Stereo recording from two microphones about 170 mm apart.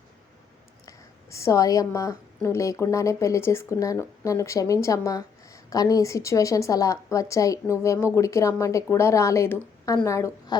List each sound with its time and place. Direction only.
0.9 s a woman's voice: 15° left (ahead or behind)